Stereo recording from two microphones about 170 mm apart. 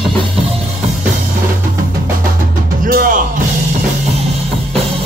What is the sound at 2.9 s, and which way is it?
Music, 55° right (ahead or behind).